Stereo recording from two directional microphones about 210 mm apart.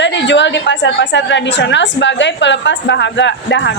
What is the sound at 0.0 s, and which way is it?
A woman's voice, 60° left (ahead or behind).